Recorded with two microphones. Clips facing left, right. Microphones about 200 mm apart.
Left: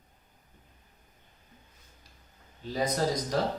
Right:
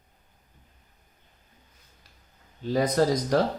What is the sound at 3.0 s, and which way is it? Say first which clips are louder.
Speech: right 7 dB; 70° right (ahead or behind).